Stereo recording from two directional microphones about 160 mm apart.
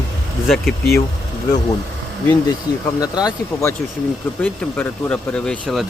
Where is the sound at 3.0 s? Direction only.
25° left (ahead or behind).